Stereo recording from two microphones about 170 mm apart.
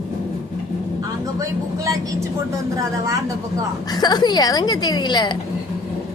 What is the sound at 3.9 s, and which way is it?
A woman's voice, 25° left (ahead or behind).